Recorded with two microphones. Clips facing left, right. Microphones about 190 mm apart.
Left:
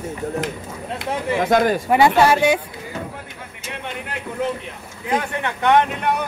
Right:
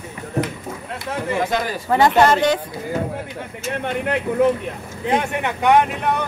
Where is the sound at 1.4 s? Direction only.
55° left (ahead or behind).